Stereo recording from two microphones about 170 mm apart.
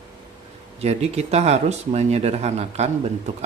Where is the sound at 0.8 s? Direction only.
40° right (ahead or behind).